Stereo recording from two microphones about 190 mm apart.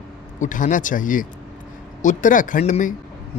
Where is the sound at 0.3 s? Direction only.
40° left (ahead or behind).